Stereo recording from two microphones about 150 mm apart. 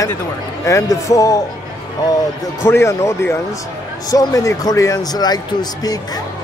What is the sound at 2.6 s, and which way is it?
A man's voice, 20° left (ahead or behind).